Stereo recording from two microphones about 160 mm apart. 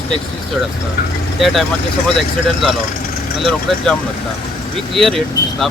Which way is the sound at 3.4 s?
Centre (ahead or behind).